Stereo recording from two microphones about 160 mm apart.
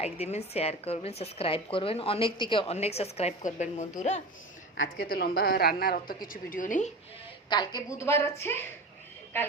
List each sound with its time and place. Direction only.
0.0 s a woman's voice: 40° left (ahead or behind)
4.9 s a woman's voice: 75° left (ahead or behind); by 6.9 s 50° left (ahead or behind)
7.5 s a woman's voice: 25° left (ahead or behind)